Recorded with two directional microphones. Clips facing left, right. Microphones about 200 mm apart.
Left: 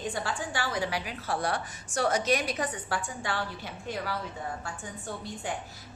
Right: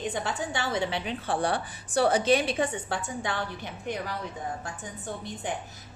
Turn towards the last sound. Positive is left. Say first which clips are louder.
# right 1 dB
turn(degrees=-20)  # may be behind; listen again after turning